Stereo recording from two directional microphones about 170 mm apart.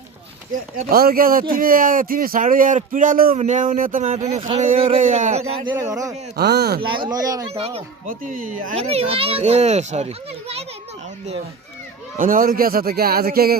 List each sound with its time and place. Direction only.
0.5 s speech: 55° right (ahead or behind)
3.3 s speech: 45° right (ahead or behind)
4.9 s speech: 50° right (ahead or behind)
5.9 s speech: 20° right (ahead or behind)
6.3 s speech: 70° right (ahead or behind)
6.8 s speech: 30° right (ahead or behind)
7.5 s a child's voice: 35° right (ahead or behind)
8.3 s speech: 50° right (ahead or behind)
8.7 s a child's voice: 35° right (ahead or behind)
12.1 s speech: 55° right (ahead or behind)